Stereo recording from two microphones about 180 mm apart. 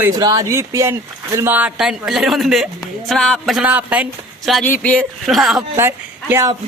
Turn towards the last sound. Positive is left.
turn(degrees=-15)  # may be behind; listen again after turning